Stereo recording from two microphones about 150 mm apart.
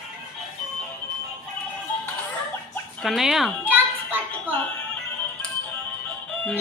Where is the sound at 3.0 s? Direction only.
Centre (ahead or behind).